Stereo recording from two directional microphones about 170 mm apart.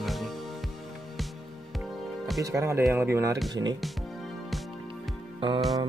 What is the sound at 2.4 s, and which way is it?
Speech, 15° right (ahead or behind).